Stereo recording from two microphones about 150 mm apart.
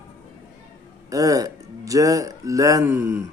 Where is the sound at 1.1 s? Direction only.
20° right (ahead or behind).